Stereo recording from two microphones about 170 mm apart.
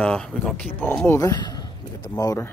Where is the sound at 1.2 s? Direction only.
20° left (ahead or behind).